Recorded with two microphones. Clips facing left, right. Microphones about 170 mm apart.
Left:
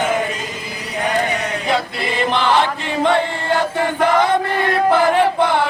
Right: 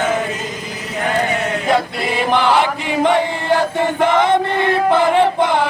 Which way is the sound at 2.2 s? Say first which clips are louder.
Right 2 dB; 15° right (ahead or behind).